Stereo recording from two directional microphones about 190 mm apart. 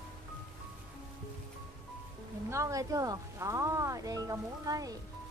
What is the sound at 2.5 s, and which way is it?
Speech, 15° right (ahead or behind).